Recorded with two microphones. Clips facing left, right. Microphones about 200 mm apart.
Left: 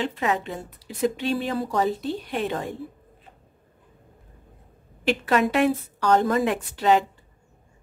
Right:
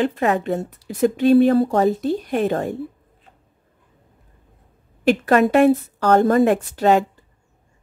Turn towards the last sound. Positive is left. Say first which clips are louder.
# right 4 dB
turn(degrees=-45)  # may be behind; listen again after turning